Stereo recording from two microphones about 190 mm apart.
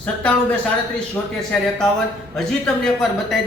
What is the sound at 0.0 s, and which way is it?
A man's voice, 5° left (ahead or behind).